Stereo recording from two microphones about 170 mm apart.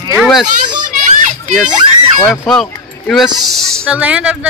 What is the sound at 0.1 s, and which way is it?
Children playing, centre (ahead or behind).